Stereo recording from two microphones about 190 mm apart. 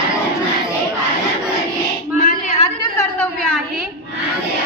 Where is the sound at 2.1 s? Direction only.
40° left (ahead or behind).